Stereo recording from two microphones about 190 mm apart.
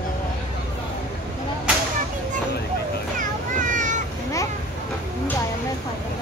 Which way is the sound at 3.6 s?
40° right (ahead or behind).